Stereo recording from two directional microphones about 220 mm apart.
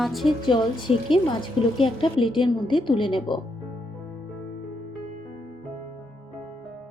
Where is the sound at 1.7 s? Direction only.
25° left (ahead or behind).